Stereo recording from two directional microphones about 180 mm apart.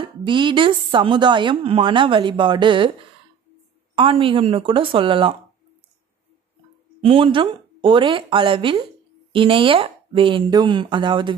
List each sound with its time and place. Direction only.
0.0 s a woman's voice: 25° right (ahead or behind)
3.9 s a woman's voice: 30° right (ahead or behind)
7.0 s a woman's voice: 30° right (ahead or behind)